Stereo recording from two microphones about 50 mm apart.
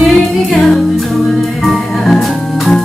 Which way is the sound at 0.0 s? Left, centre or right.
Centre.